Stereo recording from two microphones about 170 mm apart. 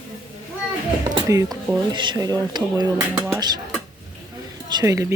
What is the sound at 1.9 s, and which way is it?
Speech, 25° right (ahead or behind).